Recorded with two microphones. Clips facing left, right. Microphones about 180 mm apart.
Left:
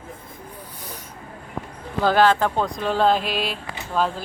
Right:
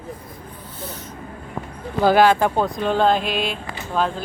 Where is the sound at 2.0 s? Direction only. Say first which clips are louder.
Right 3 dB; 10° right (ahead or behind).